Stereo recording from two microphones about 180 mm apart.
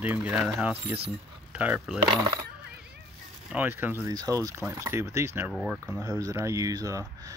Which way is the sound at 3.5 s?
10° right (ahead or behind).